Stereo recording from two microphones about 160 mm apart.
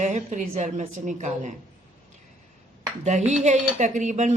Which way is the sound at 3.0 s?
45° right (ahead or behind).